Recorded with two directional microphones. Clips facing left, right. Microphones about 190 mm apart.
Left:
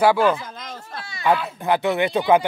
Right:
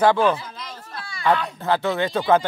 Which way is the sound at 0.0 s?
10° left (ahead or behind).